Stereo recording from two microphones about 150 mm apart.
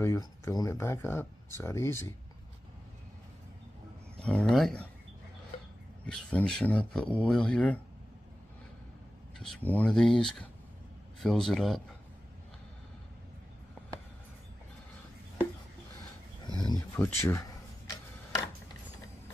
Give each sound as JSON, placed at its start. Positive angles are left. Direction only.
{"t": 0.0, "sound": "speech", "side_deg": 20}
{"t": 4.2, "sound": "speech", "side_deg": 5}
{"t": 6.0, "sound": "speech", "side_deg": 5}
{"t": 9.4, "sound": "speech", "side_deg": 5}
{"t": 16.4, "sound": "a sound", "side_deg": 30}
{"t": 16.9, "sound": "a sound", "side_deg": 20}